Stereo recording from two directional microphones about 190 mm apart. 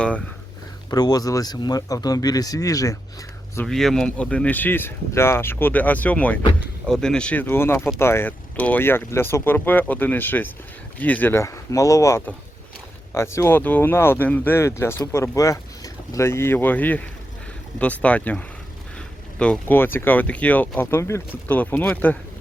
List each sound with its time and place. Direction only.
0.9 s speech: 20° left (ahead or behind)
3.7 s speech: centre (ahead or behind)